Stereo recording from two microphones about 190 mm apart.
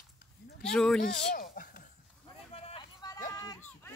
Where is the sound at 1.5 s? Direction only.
45° left (ahead or behind).